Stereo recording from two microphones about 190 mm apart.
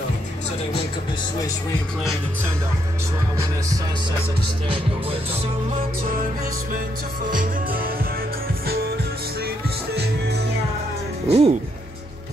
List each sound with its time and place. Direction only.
4.6 s speech: 30° right (ahead or behind)
7.3 s music: 50° right (ahead or behind)
11.2 s speech: 35° right (ahead or behind)